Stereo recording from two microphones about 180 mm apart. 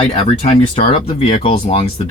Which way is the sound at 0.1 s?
35° left (ahead or behind).